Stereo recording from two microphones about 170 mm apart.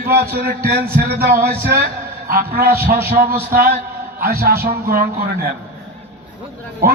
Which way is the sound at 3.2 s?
60° right (ahead or behind).